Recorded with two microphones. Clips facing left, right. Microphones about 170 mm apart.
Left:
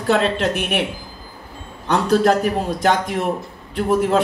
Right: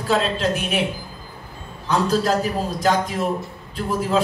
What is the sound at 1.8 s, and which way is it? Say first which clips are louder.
A man's voice: left 4 dB; 65° left (ahead or behind).